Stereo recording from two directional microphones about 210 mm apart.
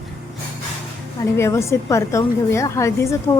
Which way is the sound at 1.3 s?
15° left (ahead or behind).